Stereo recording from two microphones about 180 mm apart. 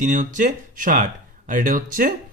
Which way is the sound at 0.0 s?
45° right (ahead or behind).